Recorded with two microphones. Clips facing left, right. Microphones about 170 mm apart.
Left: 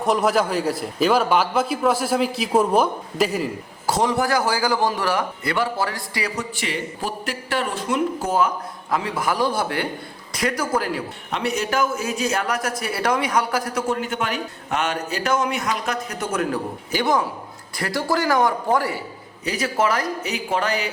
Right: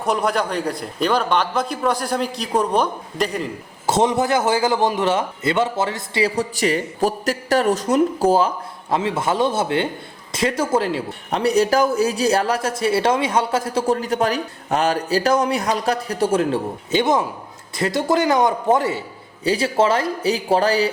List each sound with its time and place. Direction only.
0.0 s a man's voice: centre (ahead or behind)
3.8 s a man's voice: 20° right (ahead or behind)